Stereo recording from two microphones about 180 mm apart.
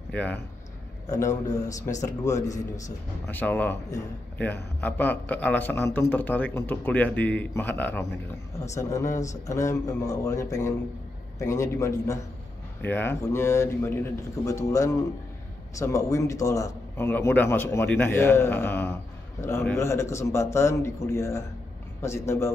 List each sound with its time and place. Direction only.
0.1 s speech: 10° left (ahead or behind)
1.0 s a man's voice: 20° left (ahead or behind)